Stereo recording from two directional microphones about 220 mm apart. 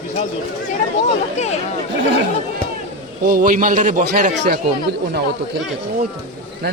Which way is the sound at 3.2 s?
40° right (ahead or behind).